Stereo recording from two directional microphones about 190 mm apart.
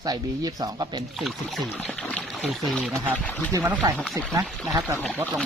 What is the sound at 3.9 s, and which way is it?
Speech, 5° left (ahead or behind).